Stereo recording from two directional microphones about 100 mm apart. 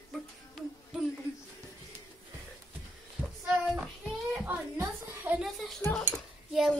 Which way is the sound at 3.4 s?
10° right (ahead or behind).